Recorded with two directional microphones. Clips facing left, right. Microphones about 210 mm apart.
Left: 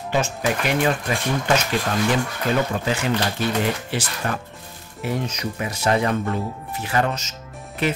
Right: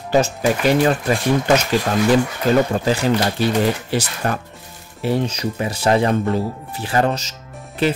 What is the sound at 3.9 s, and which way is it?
Speech, 40° right (ahead or behind).